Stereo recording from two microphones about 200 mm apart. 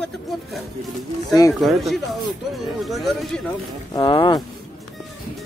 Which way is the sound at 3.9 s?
25° left (ahead or behind).